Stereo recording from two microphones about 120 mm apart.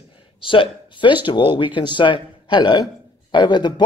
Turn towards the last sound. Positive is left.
turn(degrees=40)  # may be behind; listen again after turning